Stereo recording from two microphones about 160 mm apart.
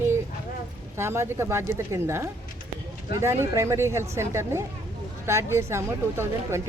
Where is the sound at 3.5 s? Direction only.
20° right (ahead or behind).